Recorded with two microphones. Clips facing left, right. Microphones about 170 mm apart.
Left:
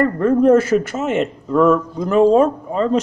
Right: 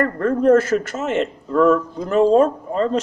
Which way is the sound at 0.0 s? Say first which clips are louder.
Left 3 dB; 10° left (ahead or behind).